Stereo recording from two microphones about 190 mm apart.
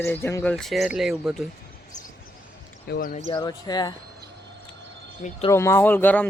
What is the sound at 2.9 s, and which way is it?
Speech, 45° left (ahead or behind).